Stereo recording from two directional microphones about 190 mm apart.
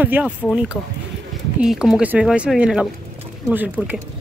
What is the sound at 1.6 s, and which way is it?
A man's voice, centre (ahead or behind).